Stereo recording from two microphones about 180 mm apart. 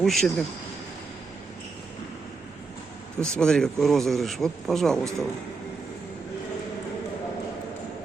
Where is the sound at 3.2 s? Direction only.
5° left (ahead or behind).